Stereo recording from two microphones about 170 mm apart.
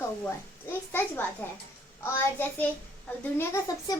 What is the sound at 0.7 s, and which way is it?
A child's voice, 10° left (ahead or behind).